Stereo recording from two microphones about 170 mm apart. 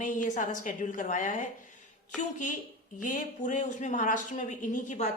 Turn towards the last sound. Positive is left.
turn(degrees=45)  # may be behind; listen again after turning